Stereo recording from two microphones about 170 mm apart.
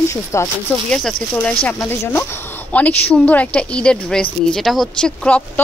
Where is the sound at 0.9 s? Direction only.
5° left (ahead or behind).